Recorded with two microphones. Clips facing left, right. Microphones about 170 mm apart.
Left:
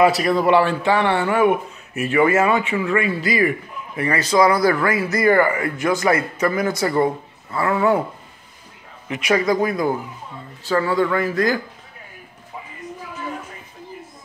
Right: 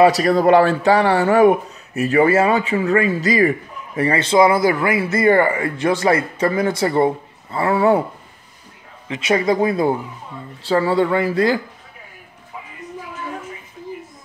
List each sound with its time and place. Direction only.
0.0 s speech: 40° right (ahead or behind)
9.1 s speech: 25° right (ahead or behind)